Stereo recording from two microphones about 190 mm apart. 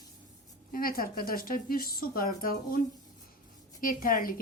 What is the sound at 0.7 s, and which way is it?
A woman's voice, 50° left (ahead or behind).